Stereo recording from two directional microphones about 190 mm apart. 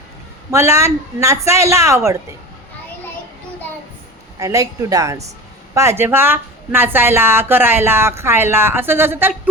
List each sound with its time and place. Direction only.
0.5 s speech: 15° right (ahead or behind)
4.4 s speech: 15° right (ahead or behind)